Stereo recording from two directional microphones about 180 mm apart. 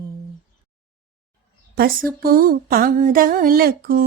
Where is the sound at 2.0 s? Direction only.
55° right (ahead or behind).